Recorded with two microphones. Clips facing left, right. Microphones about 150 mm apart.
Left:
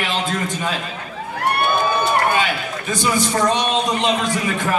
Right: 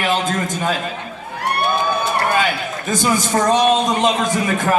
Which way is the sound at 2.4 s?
45° right (ahead or behind).